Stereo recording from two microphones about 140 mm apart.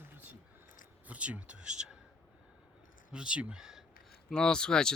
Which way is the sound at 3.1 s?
5° right (ahead or behind).